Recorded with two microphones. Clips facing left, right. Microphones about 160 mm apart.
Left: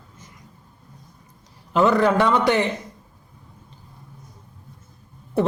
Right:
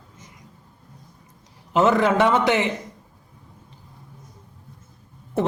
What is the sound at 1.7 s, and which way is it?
Speech, 20° right (ahead or behind).